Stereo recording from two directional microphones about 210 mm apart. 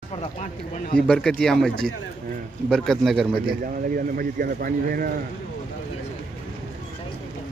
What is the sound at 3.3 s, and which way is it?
Speech, 45° right (ahead or behind).